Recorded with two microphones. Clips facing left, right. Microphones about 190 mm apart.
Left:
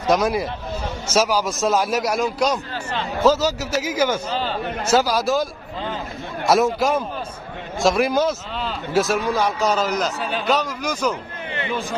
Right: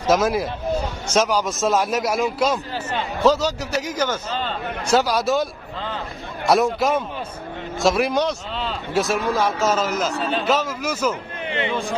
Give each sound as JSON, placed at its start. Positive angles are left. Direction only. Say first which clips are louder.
{"t": 0.0, "sound": "a man's voice", "louder": "even", "side_deg": 0}